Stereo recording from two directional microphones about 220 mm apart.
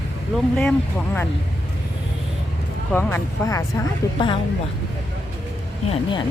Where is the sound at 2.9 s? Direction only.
10° left (ahead or behind).